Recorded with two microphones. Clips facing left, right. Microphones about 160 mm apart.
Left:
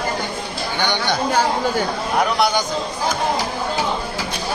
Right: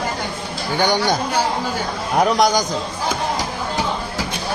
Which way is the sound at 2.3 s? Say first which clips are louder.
Right 2 dB; 40° right (ahead or behind).